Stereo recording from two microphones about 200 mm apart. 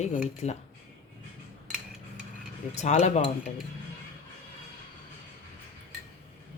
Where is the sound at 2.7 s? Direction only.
35° left (ahead or behind).